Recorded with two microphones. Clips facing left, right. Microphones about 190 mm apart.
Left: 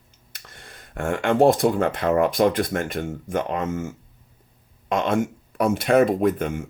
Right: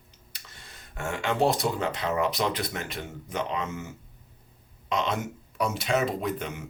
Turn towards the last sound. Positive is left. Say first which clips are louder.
# left 9 dB
turn(degrees=50)  # may be behind; listen again after turning